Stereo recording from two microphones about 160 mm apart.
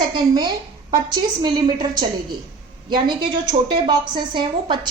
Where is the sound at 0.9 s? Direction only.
25° right (ahead or behind).